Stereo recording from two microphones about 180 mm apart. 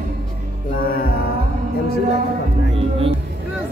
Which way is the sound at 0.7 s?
55° left (ahead or behind).